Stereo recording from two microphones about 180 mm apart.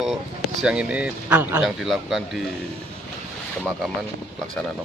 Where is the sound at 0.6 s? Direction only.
5° right (ahead or behind).